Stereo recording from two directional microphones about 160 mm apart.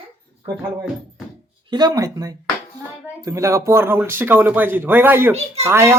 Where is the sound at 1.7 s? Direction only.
25° right (ahead or behind).